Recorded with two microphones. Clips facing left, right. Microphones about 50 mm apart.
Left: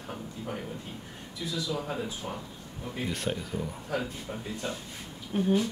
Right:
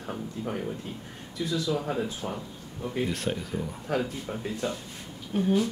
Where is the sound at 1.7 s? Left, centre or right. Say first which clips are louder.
Right 4 dB; centre.